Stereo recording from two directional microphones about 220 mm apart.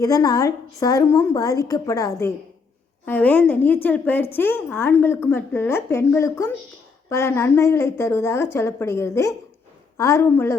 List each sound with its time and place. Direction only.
0.0 s a woman's voice: 15° left (ahead or behind)